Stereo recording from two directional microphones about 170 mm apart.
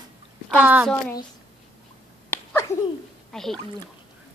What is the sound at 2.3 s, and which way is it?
Finger snapping, 15° left (ahead or behind).